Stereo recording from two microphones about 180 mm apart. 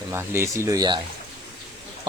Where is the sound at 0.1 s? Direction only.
15° right (ahead or behind).